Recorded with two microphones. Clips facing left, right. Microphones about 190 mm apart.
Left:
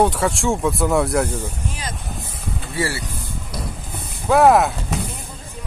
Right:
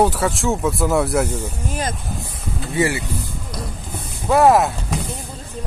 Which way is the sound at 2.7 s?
20° right (ahead or behind).